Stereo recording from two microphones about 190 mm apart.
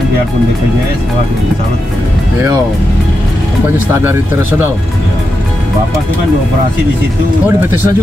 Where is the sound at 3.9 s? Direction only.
15° right (ahead or behind).